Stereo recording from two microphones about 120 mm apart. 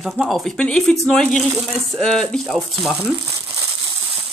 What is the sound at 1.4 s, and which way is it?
Speech, 10° right (ahead or behind).